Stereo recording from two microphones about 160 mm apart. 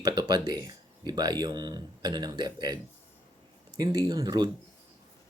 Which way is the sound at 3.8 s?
25° right (ahead or behind).